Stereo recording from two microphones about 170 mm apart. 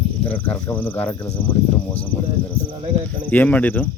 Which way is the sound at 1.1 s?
20° left (ahead or behind).